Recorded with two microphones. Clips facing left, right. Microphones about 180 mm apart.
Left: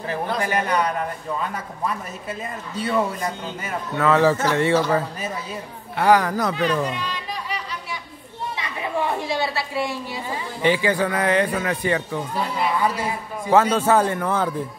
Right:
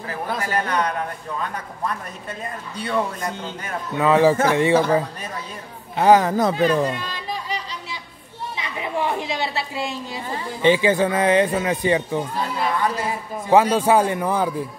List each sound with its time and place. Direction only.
0.4 s a man's voice: 15° left (ahead or behind)
2.8 s a man's voice: 5° left (ahead or behind)
3.9 s a man's voice: 15° right (ahead or behind)
6.5 s speech: 40° right (ahead or behind)
8.5 s a sound: 20° right (ahead or behind)
10.6 s speech: 20° right (ahead or behind)
12.5 s a man's voice: 10° left (ahead or behind)
13.5 s a man's voice: 15° right (ahead or behind)